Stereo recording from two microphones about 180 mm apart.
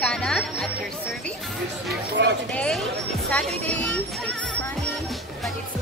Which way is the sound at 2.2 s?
70° right (ahead or behind).